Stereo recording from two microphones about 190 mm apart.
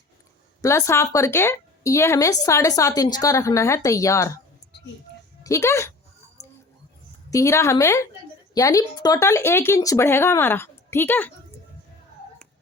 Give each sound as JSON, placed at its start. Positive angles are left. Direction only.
{"t": 0.6, "sound": "a woman's voice", "side_deg": 15}
{"t": 5.4, "sound": "speech", "side_deg": 15}
{"t": 7.3, "sound": "a woman's voice", "side_deg": 15}